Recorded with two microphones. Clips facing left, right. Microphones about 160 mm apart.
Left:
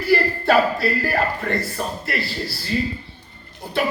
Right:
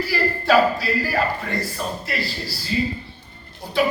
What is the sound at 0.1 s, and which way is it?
A man's voice, 60° left (ahead or behind).